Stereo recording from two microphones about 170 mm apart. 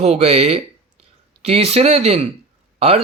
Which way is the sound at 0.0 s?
40° right (ahead or behind).